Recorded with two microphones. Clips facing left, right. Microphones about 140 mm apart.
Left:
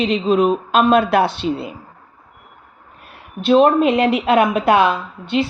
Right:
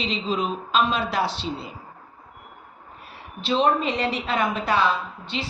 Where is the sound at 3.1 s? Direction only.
55° left (ahead or behind).